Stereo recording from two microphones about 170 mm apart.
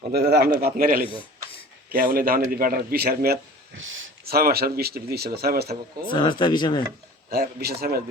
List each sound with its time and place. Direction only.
0.1 s a man's voice: 70° right (ahead or behind)
6.1 s speech: 25° left (ahead or behind)
7.6 s a man's voice: 70° right (ahead or behind)